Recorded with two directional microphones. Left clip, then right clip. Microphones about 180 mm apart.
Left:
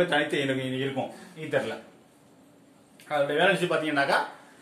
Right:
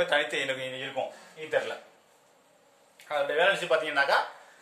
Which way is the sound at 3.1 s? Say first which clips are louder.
Left 2 dB; 20° right (ahead or behind).